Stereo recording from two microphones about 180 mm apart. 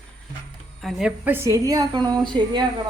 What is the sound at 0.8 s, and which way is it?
A woman's voice, 5° right (ahead or behind).